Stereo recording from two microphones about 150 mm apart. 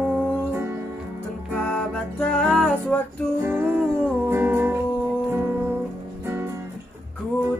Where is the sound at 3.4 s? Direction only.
10° right (ahead or behind).